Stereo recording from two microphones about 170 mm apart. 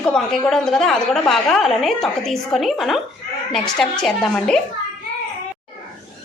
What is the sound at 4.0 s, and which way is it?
Speech, 5° left (ahead or behind).